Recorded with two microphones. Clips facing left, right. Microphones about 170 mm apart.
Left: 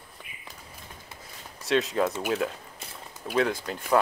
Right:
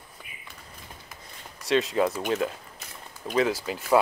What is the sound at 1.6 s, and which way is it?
Speech, centre (ahead or behind).